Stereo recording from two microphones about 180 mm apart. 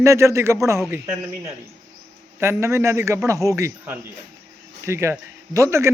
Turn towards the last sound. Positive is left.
turn(degrees=-15)  # may be behind; listen again after turning